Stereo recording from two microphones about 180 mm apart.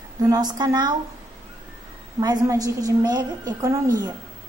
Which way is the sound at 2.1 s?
20° right (ahead or behind).